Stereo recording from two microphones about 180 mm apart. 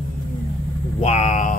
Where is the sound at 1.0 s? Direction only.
40° left (ahead or behind).